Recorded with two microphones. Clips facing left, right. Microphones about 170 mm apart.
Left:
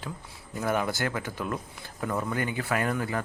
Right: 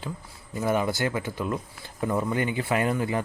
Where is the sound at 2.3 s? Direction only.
45° left (ahead or behind).